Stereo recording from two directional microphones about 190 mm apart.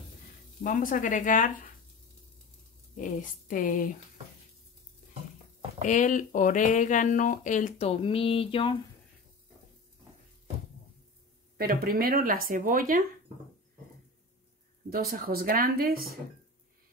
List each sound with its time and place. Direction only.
0.7 s speech: 45° left (ahead or behind)
3.0 s speech: 45° left (ahead or behind)
5.9 s speech: 40° left (ahead or behind); by 8.7 s 25° left (ahead or behind)
11.5 s speech: 55° right (ahead or behind)
14.9 s speech: 50° right (ahead or behind)